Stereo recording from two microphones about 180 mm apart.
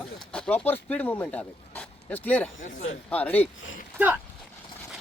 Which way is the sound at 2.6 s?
45° left (ahead or behind).